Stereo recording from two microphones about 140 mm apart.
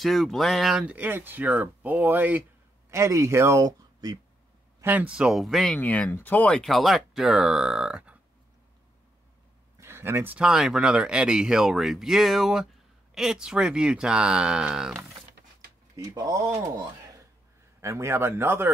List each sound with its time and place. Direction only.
0.0 s speech: centre (ahead or behind); by 4.2 s 25° right (ahead or behind)
4.7 s speech: 15° right (ahead or behind)
9.8 s speech: 15° right (ahead or behind)
16.0 s speech: 25° right (ahead or behind)
17.7 s speech: 20° right (ahead or behind)